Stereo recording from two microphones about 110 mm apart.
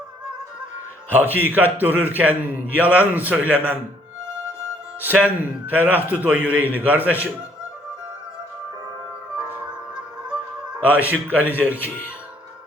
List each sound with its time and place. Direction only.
1.1 s a man's voice: 15° right (ahead or behind)
4.9 s a man's voice: 15° right (ahead or behind)
10.8 s a man's voice: 15° right (ahead or behind)